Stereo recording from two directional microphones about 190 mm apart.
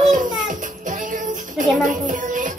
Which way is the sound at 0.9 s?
45° right (ahead or behind).